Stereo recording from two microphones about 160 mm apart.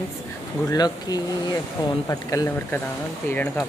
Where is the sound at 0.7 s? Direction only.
25° left (ahead or behind).